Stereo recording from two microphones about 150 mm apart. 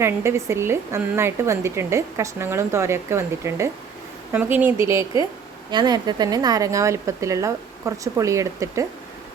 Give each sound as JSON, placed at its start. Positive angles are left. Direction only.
{"t": 0.0, "sound": "speech", "side_deg": -15}
{"t": 5.7, "sound": "speech", "side_deg": -30}